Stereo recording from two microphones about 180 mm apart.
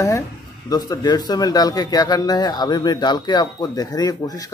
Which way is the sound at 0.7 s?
20° left (ahead or behind).